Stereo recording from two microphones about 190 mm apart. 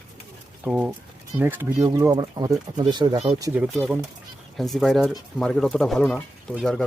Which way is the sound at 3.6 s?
5° right (ahead or behind).